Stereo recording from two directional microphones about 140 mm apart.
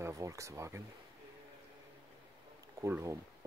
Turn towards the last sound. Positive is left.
turn(degrees=-20)  # may be behind; listen again after turning